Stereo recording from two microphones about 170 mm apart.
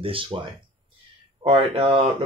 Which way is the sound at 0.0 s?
30° right (ahead or behind).